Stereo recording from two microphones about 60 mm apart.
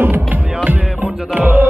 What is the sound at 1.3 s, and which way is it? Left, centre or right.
Music, right.